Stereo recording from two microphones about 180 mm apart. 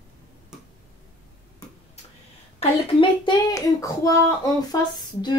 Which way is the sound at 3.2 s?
20° left (ahead or behind).